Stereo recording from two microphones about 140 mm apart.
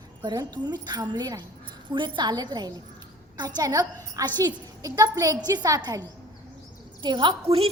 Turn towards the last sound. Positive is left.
turn(degrees=-45)  # may be behind; listen again after turning